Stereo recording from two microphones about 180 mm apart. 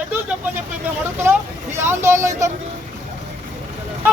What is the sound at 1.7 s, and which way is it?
Speech, 15° right (ahead or behind).